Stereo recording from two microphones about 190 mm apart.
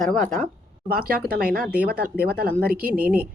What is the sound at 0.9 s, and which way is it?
Speech, 50° right (ahead or behind).